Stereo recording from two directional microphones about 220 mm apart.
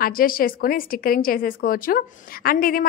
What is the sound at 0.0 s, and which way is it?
A woman's voice, 40° left (ahead or behind).